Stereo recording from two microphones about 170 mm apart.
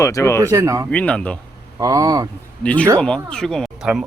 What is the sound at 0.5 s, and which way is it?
Speech, 15° right (ahead or behind).